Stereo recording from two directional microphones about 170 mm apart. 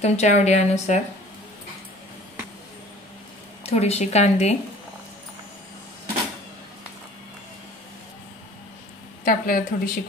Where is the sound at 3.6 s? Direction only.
40° left (ahead or behind).